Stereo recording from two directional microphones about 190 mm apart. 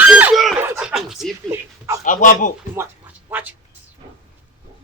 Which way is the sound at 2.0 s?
45° left (ahead or behind).